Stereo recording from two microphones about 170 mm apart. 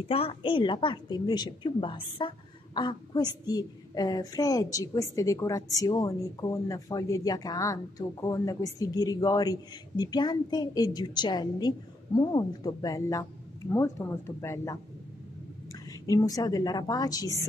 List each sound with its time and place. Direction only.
0.1 s a woman's voice: 35° left (ahead or behind); by 14.8 s 15° left (ahead or behind)
16.1 s a woman's voice: 20° left (ahead or behind)